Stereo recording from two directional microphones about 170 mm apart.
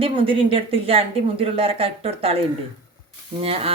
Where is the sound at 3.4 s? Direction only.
35° right (ahead or behind).